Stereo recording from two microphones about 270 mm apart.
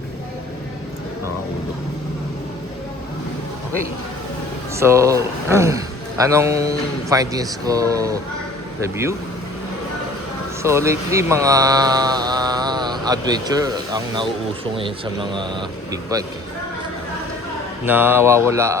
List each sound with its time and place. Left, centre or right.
4.7 s speech: centre
10.6 s speech: centre
17.8 s speech: centre